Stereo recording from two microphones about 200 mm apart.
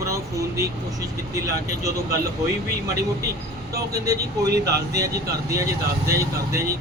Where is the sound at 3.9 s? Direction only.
15° right (ahead or behind).